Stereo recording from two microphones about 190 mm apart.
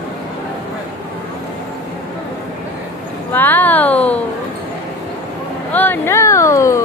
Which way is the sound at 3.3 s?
10° left (ahead or behind).